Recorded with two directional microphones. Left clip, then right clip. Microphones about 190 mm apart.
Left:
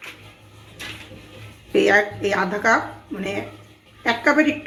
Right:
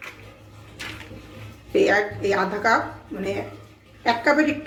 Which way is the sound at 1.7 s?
45° left (ahead or behind).